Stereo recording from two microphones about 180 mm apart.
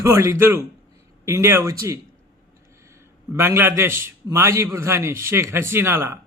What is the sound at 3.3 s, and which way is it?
A man's voice, 15° right (ahead or behind).